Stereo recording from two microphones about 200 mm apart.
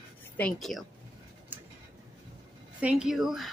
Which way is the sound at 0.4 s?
5° left (ahead or behind).